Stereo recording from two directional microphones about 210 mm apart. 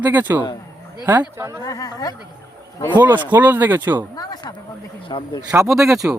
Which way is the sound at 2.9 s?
10° right (ahead or behind).